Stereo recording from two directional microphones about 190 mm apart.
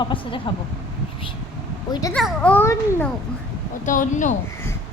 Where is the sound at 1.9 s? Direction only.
20° left (ahead or behind).